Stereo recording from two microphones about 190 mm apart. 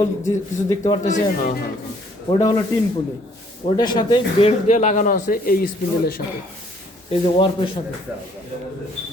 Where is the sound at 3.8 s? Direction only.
25° left (ahead or behind); by 6.2 s 50° left (ahead or behind).